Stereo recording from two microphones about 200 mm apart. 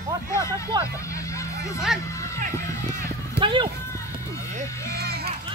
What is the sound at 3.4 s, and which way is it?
Speech, 25° right (ahead or behind).